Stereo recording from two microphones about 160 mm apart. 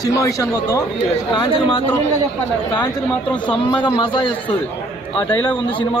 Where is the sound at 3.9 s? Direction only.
30° left (ahead or behind).